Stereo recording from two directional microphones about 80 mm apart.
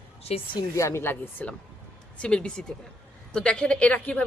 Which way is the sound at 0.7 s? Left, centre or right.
Left.